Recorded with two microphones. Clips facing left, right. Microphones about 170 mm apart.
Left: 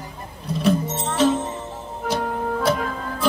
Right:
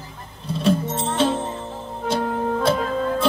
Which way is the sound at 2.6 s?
30° right (ahead or behind).